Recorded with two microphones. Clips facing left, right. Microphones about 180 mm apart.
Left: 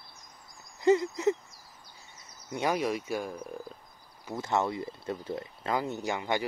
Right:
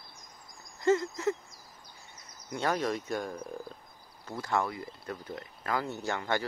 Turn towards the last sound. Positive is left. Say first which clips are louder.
# left 1 dB
turn(degrees=15)  # may be behind; listen again after turning